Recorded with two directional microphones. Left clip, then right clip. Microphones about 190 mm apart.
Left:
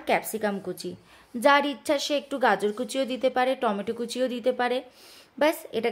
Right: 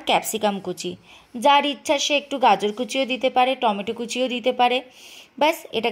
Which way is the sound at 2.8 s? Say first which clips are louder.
Right 5 dB; 40° left (ahead or behind).